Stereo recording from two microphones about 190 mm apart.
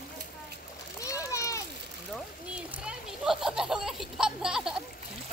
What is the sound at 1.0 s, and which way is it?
Splash, 15° left (ahead or behind).